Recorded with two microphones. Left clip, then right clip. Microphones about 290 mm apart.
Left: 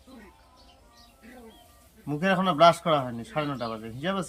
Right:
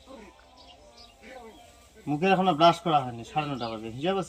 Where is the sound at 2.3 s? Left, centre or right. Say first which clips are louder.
Left 1 dB; left.